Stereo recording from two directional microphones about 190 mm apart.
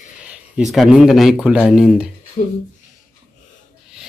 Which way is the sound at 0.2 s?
5° right (ahead or behind).